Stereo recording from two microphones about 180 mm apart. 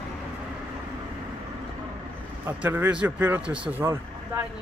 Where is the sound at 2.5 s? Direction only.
10° right (ahead or behind).